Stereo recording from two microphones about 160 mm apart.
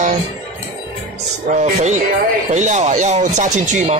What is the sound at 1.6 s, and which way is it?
Speech, 45° right (ahead or behind).